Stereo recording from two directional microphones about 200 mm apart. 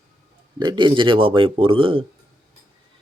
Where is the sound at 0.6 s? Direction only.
20° right (ahead or behind).